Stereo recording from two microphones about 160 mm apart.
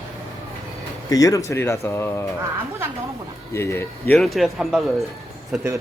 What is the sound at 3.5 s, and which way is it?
Speech, 15° left (ahead or behind).